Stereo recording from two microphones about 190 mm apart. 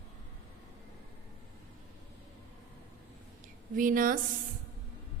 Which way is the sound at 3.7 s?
45° right (ahead or behind).